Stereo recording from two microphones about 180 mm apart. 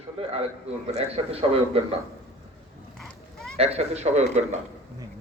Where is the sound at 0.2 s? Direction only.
30° right (ahead or behind).